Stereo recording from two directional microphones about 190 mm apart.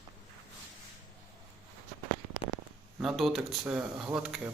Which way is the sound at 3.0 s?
Centre (ahead or behind).